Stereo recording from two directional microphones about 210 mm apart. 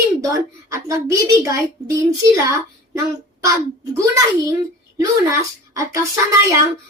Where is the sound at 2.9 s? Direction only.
15° right (ahead or behind).